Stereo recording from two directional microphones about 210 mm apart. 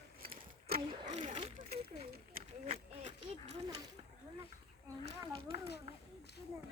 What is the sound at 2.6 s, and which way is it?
Speech, 30° right (ahead or behind).